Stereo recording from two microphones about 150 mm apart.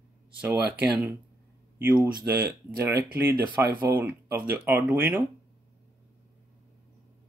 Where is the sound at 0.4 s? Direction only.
10° right (ahead or behind).